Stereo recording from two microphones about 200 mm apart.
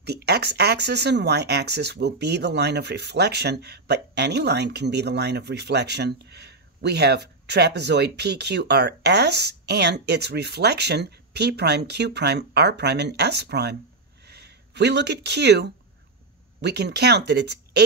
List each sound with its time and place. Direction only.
0.0 s speech: 55° right (ahead or behind)